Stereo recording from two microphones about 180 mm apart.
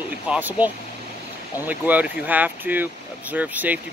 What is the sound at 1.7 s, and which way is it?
Speech, 10° right (ahead or behind).